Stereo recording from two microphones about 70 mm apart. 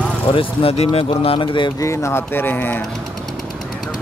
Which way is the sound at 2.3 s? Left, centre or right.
Left.